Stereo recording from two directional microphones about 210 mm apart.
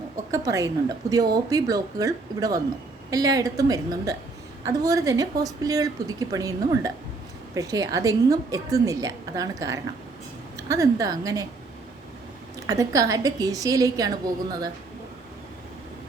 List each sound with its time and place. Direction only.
0.3 s a woman's voice: 15° right (ahead or behind)
12.5 s speech: 15° right (ahead or behind)